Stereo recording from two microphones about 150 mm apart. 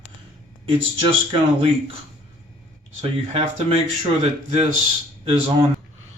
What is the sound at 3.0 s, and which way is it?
Speech, 40° right (ahead or behind).